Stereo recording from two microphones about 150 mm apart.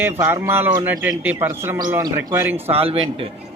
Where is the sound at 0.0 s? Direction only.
15° right (ahead or behind).